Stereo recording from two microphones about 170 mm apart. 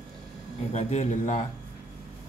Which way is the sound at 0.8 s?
40° left (ahead or behind).